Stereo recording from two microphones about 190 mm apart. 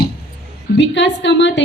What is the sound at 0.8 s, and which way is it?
Speech, 70° left (ahead or behind).